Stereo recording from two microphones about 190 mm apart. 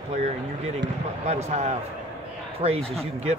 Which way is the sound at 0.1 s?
35° right (ahead or behind).